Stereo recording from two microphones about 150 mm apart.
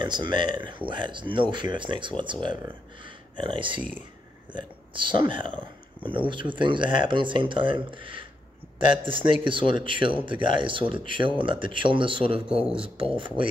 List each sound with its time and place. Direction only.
0.0 s speech: 30° right (ahead or behind)